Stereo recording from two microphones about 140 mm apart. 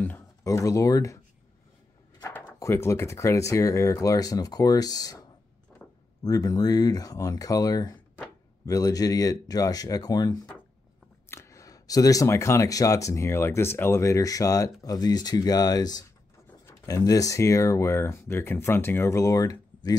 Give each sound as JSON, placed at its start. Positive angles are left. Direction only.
{"t": 0.0, "sound": "speech", "side_deg": 20}
{"t": 2.2, "sound": "speech", "side_deg": 15}
{"t": 5.8, "sound": "a sound", "side_deg": 5}
{"t": 6.2, "sound": "speech", "side_deg": 25}